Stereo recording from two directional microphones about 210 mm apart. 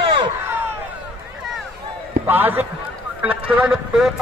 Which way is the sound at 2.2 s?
10° right (ahead or behind).